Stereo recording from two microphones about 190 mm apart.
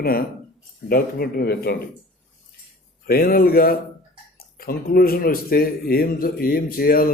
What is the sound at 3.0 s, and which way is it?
Speech, 50° left (ahead or behind).